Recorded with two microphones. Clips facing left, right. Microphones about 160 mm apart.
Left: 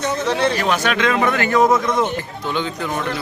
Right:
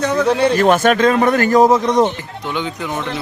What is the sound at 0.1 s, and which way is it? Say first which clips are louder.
A man's voice: right 4 dB; 55° right (ahead or behind).